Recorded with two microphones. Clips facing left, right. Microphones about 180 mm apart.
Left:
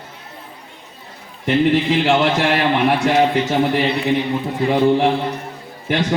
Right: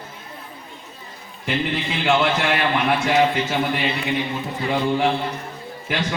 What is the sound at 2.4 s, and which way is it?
Speech, centre (ahead or behind).